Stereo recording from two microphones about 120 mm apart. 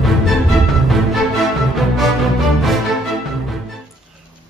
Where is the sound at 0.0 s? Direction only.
Centre (ahead or behind).